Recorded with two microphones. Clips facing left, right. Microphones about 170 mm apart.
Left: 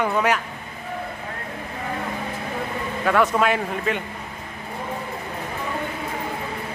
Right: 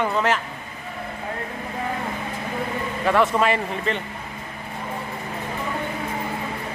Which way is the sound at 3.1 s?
Centre (ahead or behind).